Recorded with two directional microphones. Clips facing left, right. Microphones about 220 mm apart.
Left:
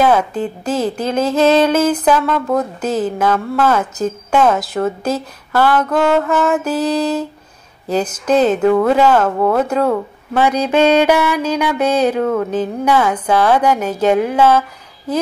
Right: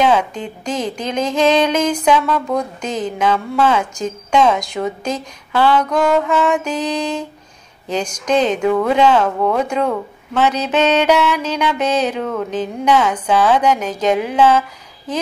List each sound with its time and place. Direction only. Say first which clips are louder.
0.0 s speech: left 2 dB; 5° left (ahead or behind)